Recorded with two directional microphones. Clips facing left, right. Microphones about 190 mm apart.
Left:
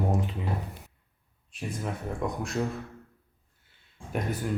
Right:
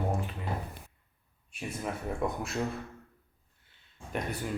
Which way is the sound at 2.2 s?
Centre (ahead or behind).